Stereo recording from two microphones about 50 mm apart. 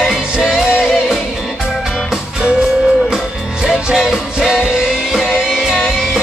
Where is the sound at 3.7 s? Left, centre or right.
Centre.